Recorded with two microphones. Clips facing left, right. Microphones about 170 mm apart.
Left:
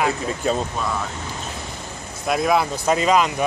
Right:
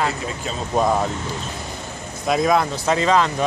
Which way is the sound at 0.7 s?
45° right (ahead or behind).